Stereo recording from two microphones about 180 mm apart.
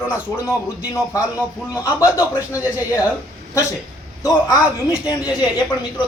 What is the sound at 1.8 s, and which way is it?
Speech, 15° left (ahead or behind).